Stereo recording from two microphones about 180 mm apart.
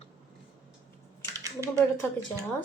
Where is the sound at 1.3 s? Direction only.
15° right (ahead or behind).